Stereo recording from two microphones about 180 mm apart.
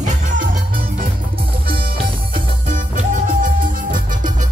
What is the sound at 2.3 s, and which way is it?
Music, 45° right (ahead or behind).